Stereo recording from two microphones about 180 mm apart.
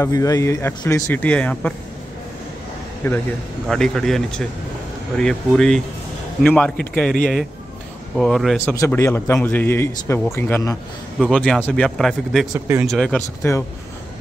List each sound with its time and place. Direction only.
0.0 s a man's voice: 20° left (ahead or behind)
3.0 s a man's voice: 15° left (ahead or behind)
3.6 s speech: centre (ahead or behind)
8.2 s speech: centre (ahead or behind)
8.5 s a man's voice: 15° left (ahead or behind)
11.1 s speech: centre (ahead or behind)
12.5 s speech: 10° right (ahead or behind)
12.8 s speech: centre (ahead or behind)
13.4 s a man's voice: 15° left (ahead or behind)